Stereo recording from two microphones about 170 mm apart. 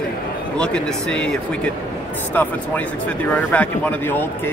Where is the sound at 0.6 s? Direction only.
5° left (ahead or behind).